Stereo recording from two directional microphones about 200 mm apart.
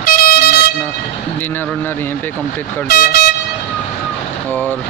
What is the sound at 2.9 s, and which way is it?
Speech, 50° left (ahead or behind).